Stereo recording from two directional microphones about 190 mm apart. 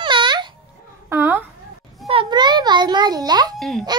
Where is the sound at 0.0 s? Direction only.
25° right (ahead or behind).